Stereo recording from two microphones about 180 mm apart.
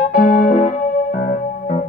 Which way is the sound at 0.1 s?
45° left (ahead or behind).